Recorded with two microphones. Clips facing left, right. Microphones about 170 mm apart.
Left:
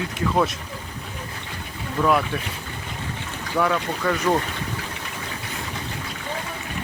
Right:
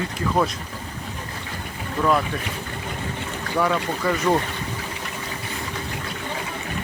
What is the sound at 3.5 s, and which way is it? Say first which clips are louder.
Speech: even; 5° right (ahead or behind).